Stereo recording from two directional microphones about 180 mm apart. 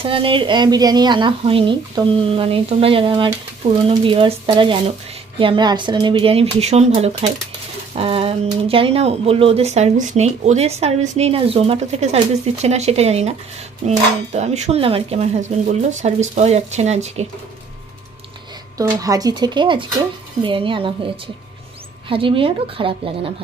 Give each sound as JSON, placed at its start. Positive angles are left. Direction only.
{"t": 0.0, "sound": "speech", "side_deg": -30}
{"t": 18.8, "sound": "speech", "side_deg": -20}
{"t": 22.1, "sound": "speech", "side_deg": -30}